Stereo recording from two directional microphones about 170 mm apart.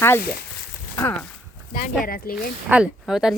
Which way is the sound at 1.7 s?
55° left (ahead or behind).